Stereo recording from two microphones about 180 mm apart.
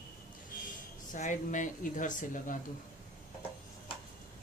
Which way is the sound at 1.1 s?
45° left (ahead or behind).